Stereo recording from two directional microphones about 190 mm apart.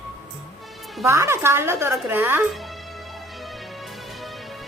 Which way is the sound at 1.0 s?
15° right (ahead or behind).